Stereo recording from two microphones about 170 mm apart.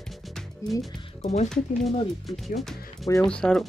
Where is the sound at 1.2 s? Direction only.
40° left (ahead or behind).